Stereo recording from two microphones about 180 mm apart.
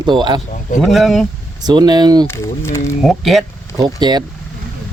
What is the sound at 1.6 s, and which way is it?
Speech, 25° right (ahead or behind).